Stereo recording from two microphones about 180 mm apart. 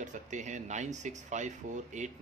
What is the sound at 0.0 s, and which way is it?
Speech, 40° right (ahead or behind).